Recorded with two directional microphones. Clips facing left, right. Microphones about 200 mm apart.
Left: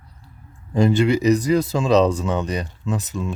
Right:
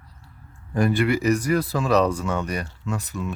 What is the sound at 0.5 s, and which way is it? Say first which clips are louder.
Speech: left 4 dB; 20° left (ahead or behind).